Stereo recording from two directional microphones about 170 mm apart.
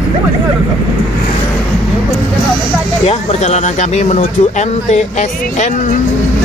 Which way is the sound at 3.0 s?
40° left (ahead or behind).